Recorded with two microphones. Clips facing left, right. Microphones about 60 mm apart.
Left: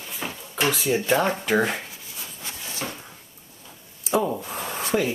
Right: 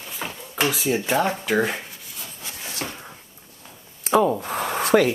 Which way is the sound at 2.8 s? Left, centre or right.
Centre.